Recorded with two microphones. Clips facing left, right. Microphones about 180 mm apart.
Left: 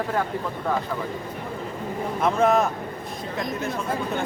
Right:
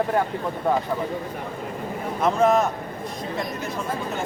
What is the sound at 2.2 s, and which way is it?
Speech, centre (ahead or behind).